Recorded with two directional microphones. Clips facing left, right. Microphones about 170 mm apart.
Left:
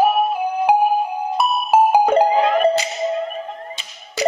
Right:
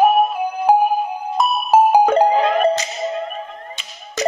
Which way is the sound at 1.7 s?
10° left (ahead or behind).